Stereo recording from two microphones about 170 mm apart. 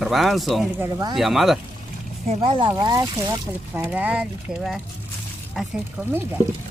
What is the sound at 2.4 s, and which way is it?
Speech, 25° right (ahead or behind).